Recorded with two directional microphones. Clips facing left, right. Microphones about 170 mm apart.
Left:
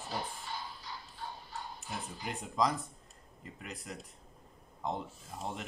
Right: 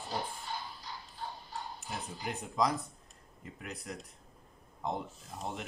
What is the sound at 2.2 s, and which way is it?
Speech, centre (ahead or behind).